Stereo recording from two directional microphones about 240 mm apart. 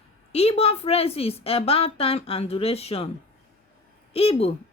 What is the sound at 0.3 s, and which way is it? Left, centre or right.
Speech, left.